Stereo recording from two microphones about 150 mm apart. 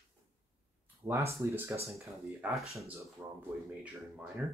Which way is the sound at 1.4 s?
15° right (ahead or behind).